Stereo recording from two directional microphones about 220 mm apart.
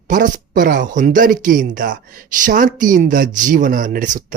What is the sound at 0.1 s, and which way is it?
Speech, 40° right (ahead or behind).